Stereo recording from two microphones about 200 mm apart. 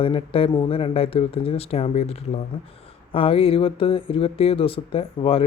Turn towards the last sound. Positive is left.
turn(degrees=30)  # may be behind; listen again after turning